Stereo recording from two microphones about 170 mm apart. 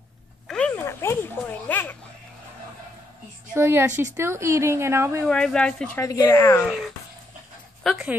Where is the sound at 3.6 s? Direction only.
15° right (ahead or behind).